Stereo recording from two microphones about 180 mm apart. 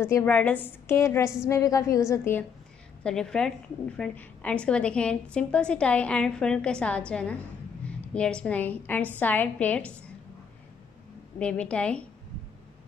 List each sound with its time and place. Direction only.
0.0 s a woman's voice: 10° left (ahead or behind)
3.0 s a woman's voice: 5° left (ahead or behind)
11.3 s a woman's voice: 5° left (ahead or behind)